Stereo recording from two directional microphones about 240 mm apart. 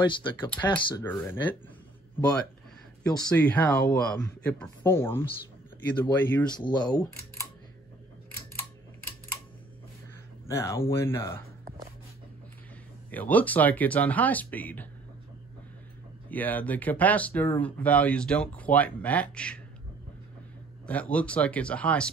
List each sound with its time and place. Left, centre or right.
0.0 s speech: centre
3.0 s speech: centre
10.5 s speech: centre
13.1 s speech: centre
16.3 s speech: centre
20.8 s speech: centre